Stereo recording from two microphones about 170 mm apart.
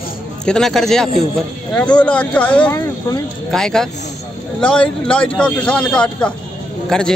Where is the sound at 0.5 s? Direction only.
Centre (ahead or behind).